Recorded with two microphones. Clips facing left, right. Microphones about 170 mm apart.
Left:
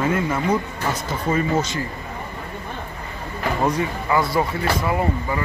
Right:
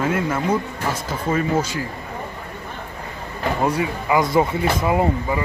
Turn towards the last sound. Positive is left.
turn(degrees=-20)  # may be behind; listen again after turning